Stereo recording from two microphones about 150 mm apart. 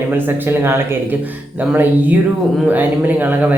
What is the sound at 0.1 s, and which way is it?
A man's voice, 15° right (ahead or behind).